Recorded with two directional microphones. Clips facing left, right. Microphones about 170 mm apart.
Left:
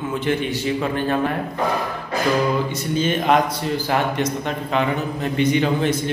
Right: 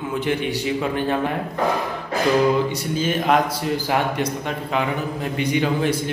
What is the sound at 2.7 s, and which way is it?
A man's voice, 5° right (ahead or behind).